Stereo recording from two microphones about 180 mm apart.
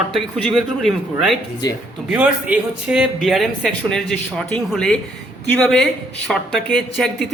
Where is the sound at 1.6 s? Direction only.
20° left (ahead or behind).